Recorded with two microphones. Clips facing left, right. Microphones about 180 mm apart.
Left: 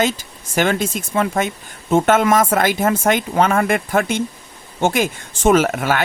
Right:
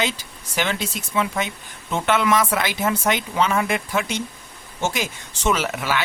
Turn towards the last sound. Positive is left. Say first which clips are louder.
# left 8 dB
turn(degrees=50)  # may be behind; listen again after turning